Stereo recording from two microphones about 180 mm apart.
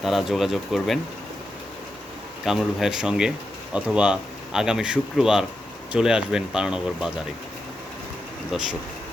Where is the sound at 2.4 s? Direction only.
Centre (ahead or behind).